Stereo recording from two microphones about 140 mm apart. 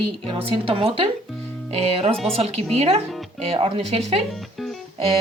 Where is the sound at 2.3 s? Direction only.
45° right (ahead or behind).